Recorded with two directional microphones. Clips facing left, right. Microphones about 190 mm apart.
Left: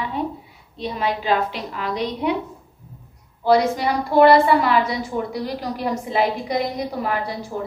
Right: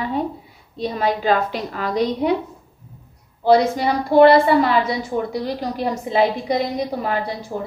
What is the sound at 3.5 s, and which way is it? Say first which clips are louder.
A woman's voice: right 2 dB; 25° right (ahead or behind).